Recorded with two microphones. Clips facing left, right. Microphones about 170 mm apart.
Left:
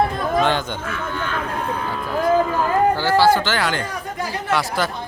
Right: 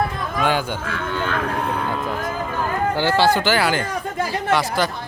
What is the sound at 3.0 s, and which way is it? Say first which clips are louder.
Speech: left 1 dB; 20° right (ahead or behind).